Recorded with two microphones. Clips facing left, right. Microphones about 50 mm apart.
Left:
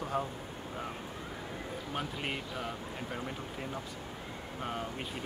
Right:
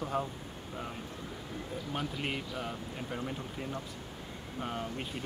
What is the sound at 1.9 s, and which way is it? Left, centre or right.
Speech, centre.